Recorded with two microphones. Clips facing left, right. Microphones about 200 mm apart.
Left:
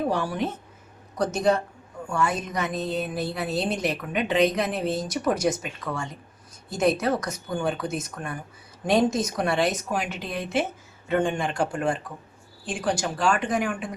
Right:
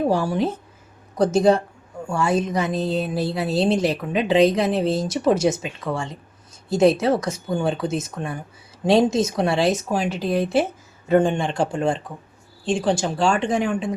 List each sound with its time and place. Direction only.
0.1 s a woman's voice: 30° right (ahead or behind)